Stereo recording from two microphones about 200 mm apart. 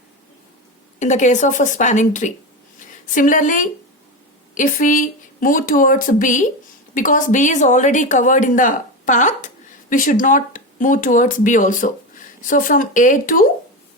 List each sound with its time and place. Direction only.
0.9 s a woman's voice: 35° left (ahead or behind)